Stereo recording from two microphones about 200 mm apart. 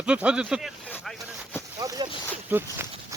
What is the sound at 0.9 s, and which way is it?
Vehicle, 10° left (ahead or behind).